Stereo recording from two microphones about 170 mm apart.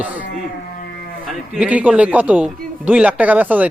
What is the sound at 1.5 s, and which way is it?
A man's voice, 10° right (ahead or behind).